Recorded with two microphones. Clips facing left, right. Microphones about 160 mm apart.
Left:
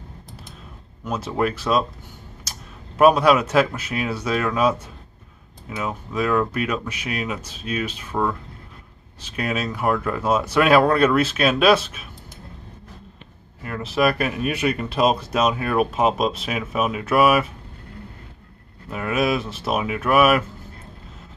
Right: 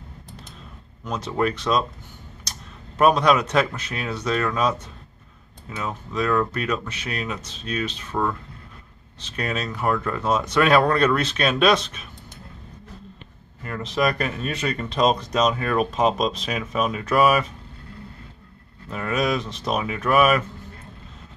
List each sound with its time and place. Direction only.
1.0 s speech: 5° left (ahead or behind)
2.5 s a sound: 5° left (ahead or behind)
3.0 s speech: 5° left (ahead or behind)
13.6 s speech: 5° left (ahead or behind)
18.9 s speech: 5° left (ahead or behind)